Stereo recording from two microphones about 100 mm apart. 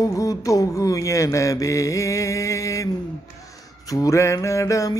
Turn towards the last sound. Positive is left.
turn(degrees=35)  # may be behind; listen again after turning